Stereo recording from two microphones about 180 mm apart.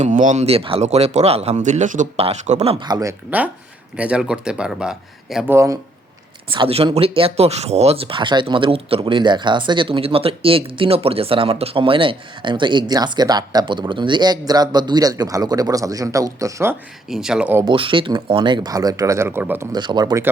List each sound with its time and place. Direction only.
0.0 s speech: 45° right (ahead or behind); by 5.5 s 5° right (ahead or behind)
5.5 s speech: 20° right (ahead or behind)
6.5 s speech: 30° right (ahead or behind); by 16.7 s 15° right (ahead or behind)
17.1 s speech: 5° right (ahead or behind)
17.7 s speech: 30° right (ahead or behind); by 19.6 s 10° right (ahead or behind)
19.7 s speech: 25° right (ahead or behind)